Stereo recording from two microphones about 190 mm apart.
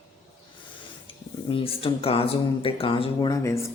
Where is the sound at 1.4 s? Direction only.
30° left (ahead or behind).